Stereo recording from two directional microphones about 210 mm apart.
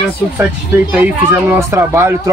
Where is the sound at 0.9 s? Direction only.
10° right (ahead or behind).